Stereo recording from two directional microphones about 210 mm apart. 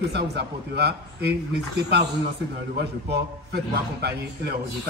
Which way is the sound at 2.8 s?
50° right (ahead or behind).